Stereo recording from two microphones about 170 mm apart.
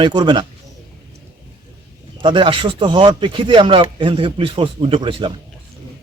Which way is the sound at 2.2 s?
30° right (ahead or behind).